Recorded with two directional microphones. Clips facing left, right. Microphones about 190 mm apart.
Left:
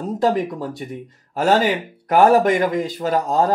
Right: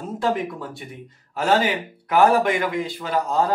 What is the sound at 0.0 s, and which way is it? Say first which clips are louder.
Speech: left 5 dB; 40° left (ahead or behind).